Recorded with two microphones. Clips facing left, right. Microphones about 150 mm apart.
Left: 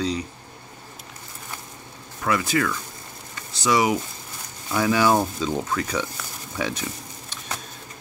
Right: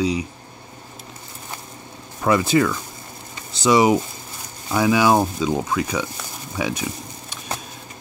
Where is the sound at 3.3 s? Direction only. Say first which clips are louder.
Right 5 dB; 20° right (ahead or behind).